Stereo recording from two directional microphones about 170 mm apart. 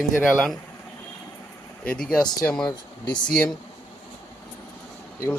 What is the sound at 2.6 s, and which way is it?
Speech, 25° left (ahead or behind).